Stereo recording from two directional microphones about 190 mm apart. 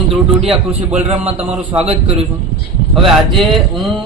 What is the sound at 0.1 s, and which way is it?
Speech, 5° right (ahead or behind).